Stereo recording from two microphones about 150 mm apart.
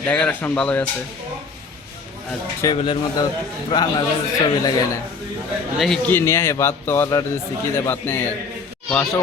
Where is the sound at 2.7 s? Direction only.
35° left (ahead or behind).